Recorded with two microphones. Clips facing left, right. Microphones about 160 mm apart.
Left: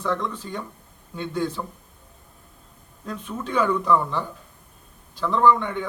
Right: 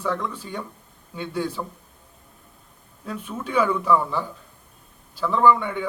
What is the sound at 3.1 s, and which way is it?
A man's voice, 10° right (ahead or behind).